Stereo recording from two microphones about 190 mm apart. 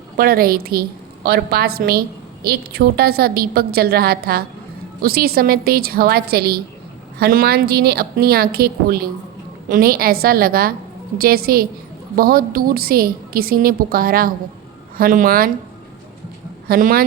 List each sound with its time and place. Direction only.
0.2 s a woman's voice: 50° right (ahead or behind)
16.6 s a woman's voice: 50° right (ahead or behind)